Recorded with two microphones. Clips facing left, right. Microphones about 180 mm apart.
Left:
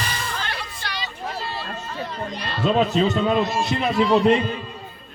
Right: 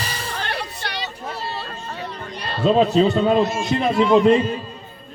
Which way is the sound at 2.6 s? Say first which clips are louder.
Right 4 dB; 35° right (ahead or behind).